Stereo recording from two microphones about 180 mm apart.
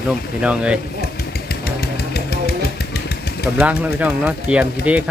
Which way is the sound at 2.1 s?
60° left (ahead or behind).